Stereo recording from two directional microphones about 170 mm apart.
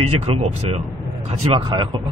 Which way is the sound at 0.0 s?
35° right (ahead or behind).